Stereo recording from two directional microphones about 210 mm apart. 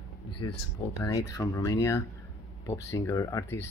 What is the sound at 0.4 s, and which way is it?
Speech, 15° left (ahead or behind).